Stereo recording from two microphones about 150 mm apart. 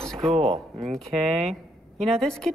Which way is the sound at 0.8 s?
Centre (ahead or behind).